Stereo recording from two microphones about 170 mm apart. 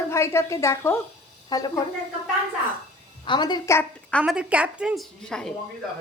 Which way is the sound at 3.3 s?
25° left (ahead or behind).